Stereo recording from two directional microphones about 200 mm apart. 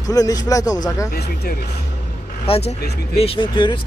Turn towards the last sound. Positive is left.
turn(degrees=25)  # may be behind; listen again after turning